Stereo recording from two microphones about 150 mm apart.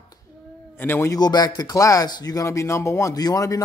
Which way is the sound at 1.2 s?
25° left (ahead or behind).